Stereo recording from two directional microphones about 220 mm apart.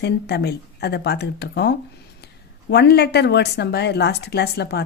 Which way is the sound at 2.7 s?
45° left (ahead or behind).